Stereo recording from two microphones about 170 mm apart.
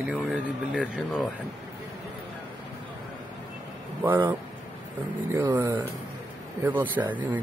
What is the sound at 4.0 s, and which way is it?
Speech, 10° right (ahead or behind).